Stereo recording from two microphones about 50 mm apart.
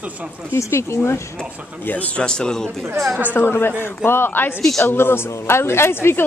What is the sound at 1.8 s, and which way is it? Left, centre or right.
Speech, left.